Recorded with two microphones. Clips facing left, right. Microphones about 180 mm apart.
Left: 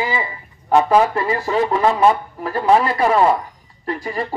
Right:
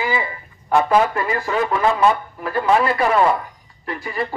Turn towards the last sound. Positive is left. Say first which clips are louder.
# left 4 dB
turn(degrees=40)  # may be behind; listen again after turning